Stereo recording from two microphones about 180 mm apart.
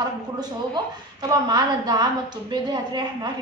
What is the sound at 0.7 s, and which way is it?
A woman's voice, 25° right (ahead or behind).